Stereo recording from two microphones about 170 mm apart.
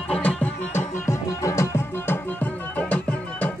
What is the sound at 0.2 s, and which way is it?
Music, 10° left (ahead or behind).